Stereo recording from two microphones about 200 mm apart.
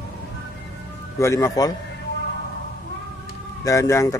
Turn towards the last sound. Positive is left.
turn(degrees=15)  # may be behind; listen again after turning